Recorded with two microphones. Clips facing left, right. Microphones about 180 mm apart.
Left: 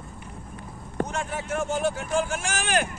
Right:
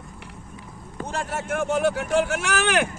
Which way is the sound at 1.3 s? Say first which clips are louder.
Right 3 dB; 65° right (ahead or behind).